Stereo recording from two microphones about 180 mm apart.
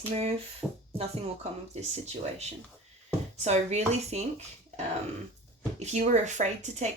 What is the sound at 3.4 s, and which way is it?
Speech, 40° right (ahead or behind).